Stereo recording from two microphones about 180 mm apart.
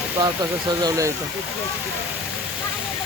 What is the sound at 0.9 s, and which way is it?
Speech, 20° right (ahead or behind).